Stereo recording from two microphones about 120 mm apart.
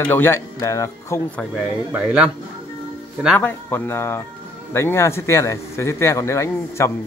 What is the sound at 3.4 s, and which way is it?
Speech, 15° left (ahead or behind).